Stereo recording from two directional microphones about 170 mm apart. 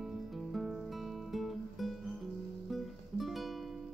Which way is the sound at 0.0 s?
Centre (ahead or behind).